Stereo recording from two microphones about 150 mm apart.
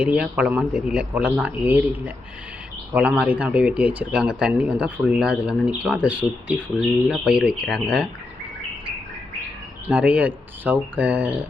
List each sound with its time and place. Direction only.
0.0 s speech: 5° right (ahead or behind)
9.9 s speech: 10° right (ahead or behind)